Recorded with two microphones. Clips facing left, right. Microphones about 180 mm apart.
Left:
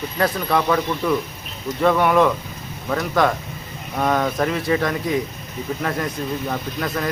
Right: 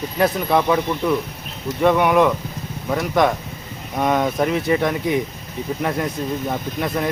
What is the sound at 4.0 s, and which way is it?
Speech, 15° right (ahead or behind).